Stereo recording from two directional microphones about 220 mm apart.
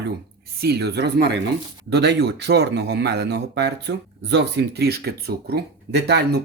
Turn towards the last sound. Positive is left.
turn(degrees=-50)  # may be behind; listen again after turning